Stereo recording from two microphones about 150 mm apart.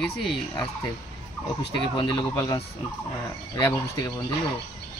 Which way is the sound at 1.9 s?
30° left (ahead or behind).